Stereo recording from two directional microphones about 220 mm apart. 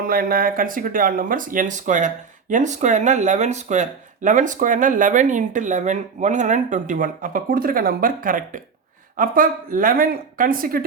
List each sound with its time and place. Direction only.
0.0 s speech: 40° right (ahead or behind)